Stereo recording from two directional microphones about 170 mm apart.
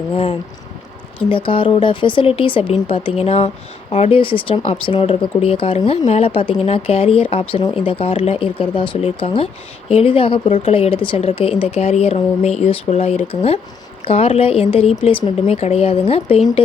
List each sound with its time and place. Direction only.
0.1 s speech: 35° left (ahead or behind)